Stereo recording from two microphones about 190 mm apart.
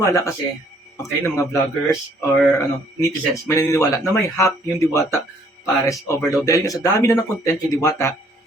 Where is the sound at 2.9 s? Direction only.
15° left (ahead or behind).